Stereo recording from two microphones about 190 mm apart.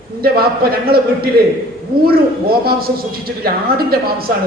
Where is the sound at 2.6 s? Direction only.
55° right (ahead or behind).